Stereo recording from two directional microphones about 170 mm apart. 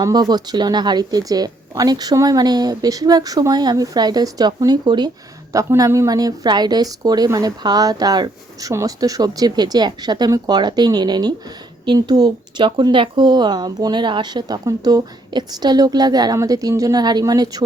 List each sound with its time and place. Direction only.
0.0 s a woman's voice: 25° right (ahead or behind)